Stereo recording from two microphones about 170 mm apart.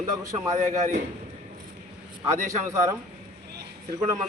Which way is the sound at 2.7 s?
20° right (ahead or behind).